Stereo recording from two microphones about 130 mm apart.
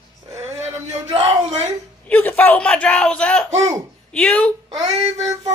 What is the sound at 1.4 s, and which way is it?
Speech, 60° right (ahead or behind).